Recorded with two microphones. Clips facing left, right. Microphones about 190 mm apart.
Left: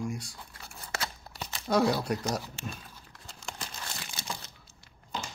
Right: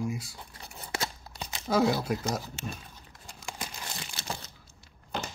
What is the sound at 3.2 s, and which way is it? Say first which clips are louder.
Crumpling: right 2 dB; 10° right (ahead or behind).